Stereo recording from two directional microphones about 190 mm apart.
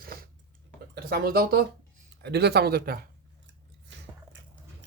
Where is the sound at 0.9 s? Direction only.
55° right (ahead or behind).